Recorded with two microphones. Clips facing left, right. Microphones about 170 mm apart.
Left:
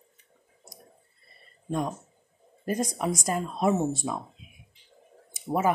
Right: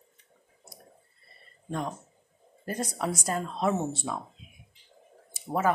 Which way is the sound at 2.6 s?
15° left (ahead or behind).